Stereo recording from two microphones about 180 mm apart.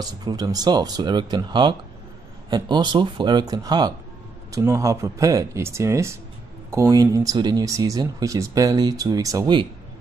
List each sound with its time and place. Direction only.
0.0 s speech: 20° right (ahead or behind)